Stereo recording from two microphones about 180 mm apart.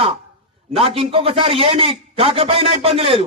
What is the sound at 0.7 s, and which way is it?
A man's voice, 30° right (ahead or behind).